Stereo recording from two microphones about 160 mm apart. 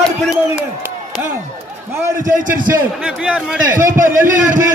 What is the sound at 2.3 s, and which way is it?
Speech, 60° right (ahead or behind).